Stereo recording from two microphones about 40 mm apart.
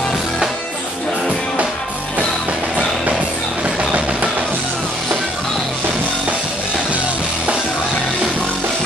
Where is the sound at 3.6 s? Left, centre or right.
Right.